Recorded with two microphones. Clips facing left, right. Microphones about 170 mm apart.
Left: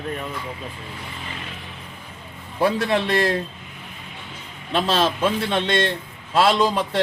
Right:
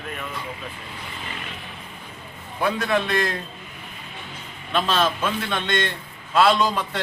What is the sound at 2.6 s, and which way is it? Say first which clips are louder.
Speech: left 2 dB; 35° left (ahead or behind).